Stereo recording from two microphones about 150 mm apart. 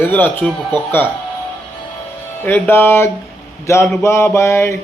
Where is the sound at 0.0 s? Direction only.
15° left (ahead or behind).